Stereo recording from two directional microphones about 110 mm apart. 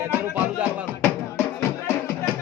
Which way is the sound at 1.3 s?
25° left (ahead or behind).